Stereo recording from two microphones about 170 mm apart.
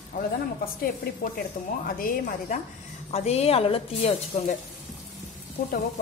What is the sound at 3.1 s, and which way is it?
A woman's voice, 40° left (ahead or behind).